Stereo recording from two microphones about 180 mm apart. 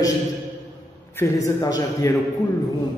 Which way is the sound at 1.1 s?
15° left (ahead or behind).